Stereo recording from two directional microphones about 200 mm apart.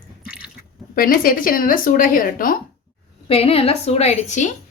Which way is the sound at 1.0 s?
45° left (ahead or behind).